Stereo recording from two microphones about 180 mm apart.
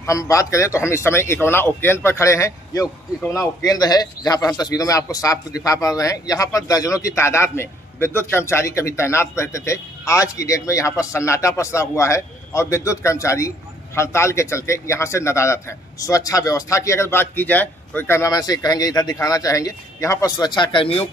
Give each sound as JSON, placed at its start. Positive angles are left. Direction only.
{"t": 0.0, "sound": "a man's voice", "side_deg": 20}